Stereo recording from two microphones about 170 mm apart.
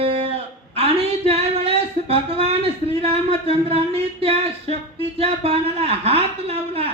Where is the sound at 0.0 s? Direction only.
35° right (ahead or behind).